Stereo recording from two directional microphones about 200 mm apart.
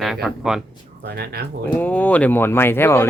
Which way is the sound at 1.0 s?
55° right (ahead or behind).